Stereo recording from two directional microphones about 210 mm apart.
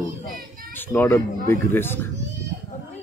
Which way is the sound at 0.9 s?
10° left (ahead or behind).